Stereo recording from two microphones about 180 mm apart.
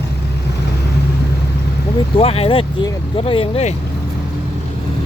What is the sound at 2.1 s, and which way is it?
Speech, 35° left (ahead or behind).